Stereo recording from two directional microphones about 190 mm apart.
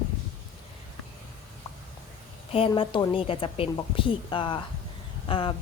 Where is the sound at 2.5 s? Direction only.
30° left (ahead or behind).